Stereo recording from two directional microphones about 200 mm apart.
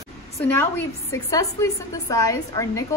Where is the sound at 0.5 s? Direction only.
10° left (ahead or behind).